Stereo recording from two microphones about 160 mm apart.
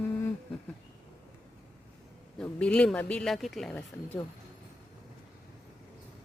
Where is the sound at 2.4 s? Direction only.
5° left (ahead or behind).